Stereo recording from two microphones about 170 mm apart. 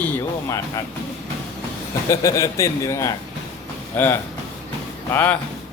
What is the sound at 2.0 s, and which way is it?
A man's voice, 20° left (ahead or behind).